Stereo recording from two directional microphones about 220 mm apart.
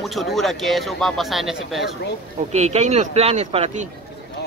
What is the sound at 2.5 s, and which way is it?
Speech, 30° right (ahead or behind).